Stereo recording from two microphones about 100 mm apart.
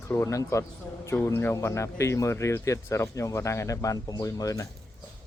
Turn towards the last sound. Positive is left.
turn(degrees=35)  # may be behind; listen again after turning